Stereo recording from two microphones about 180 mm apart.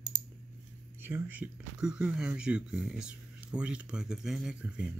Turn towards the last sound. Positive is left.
turn(degrees=-5)  # may be behind; listen again after turning